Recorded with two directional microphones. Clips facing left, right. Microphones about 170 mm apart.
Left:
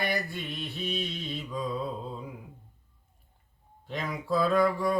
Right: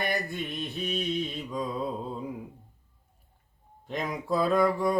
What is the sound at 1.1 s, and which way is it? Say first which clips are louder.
Mantra: right 4 dB; 20° right (ahead or behind).